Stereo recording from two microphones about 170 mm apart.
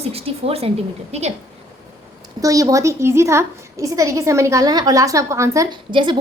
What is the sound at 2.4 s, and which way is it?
A woman's voice, 20° right (ahead or behind).